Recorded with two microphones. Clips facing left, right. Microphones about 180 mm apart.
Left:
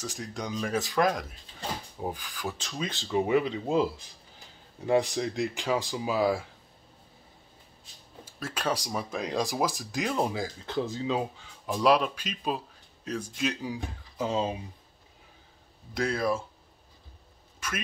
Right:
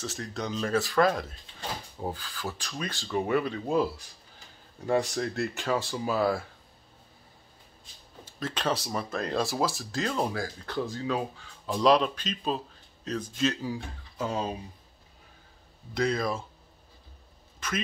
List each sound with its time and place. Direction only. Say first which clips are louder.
0.0 s speech: right 1 dB; 10° left (ahead or behind)
8.3 s speech: right 1 dB; 10° left (ahead or behind)
11.7 s speech: right 1 dB; 5° left (ahead or behind)
15.9 s speech: even; 10° left (ahead or behind)